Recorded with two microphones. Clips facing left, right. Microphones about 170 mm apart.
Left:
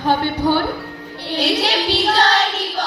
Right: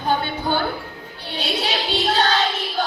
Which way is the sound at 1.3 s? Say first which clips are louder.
Left 6 dB; 75° left (ahead or behind).